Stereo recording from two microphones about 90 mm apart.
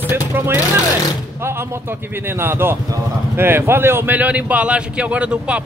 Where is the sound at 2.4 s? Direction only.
25° right (ahead or behind).